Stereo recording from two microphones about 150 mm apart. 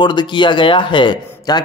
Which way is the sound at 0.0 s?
30° left (ahead or behind).